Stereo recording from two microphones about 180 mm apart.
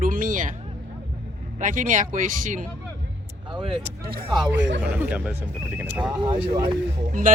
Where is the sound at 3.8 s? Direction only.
55° right (ahead or behind).